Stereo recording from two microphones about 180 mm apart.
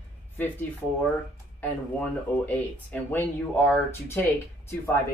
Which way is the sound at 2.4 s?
10° left (ahead or behind).